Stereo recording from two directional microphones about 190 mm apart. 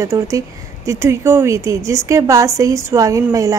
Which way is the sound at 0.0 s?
15° right (ahead or behind).